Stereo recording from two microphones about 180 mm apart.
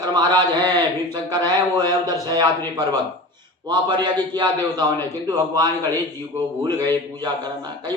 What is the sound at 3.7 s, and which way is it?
A man's voice, 25° right (ahead or behind).